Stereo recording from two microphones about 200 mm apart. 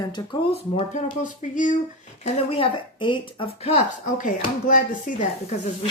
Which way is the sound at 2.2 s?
30° left (ahead or behind).